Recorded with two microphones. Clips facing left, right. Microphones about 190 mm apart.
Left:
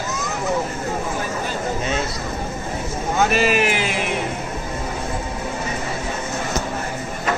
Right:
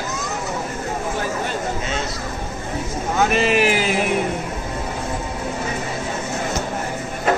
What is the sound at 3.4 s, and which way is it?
Speech, 25° right (ahead or behind).